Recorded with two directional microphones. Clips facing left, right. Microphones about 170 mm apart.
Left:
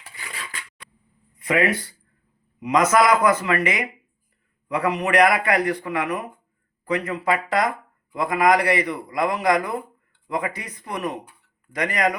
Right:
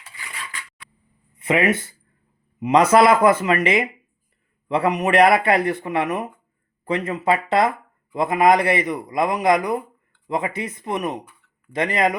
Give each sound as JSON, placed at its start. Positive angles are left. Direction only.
{"t": 1.4, "sound": "a man's voice", "side_deg": -25}